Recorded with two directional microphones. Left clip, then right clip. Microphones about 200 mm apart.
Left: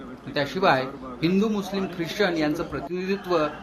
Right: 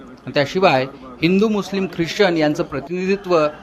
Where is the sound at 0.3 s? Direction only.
40° right (ahead or behind).